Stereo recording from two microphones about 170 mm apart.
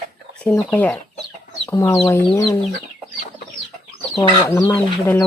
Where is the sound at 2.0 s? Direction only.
20° left (ahead or behind).